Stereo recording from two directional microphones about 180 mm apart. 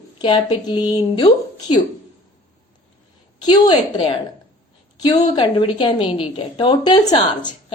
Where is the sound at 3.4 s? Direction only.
25° left (ahead or behind).